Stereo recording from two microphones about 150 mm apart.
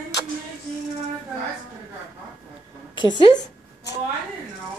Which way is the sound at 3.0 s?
30° left (ahead or behind).